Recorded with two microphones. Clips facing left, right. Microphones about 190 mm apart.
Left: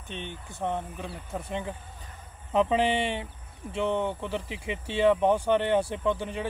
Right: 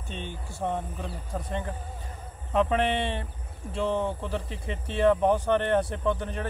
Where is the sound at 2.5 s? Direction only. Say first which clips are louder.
Even; 20° left (ahead or behind).